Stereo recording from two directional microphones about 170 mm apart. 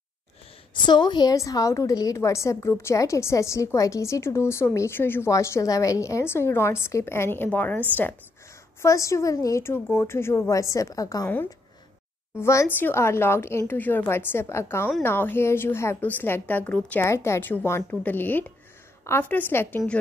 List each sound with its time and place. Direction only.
0.7 s a woman's voice: 25° left (ahead or behind)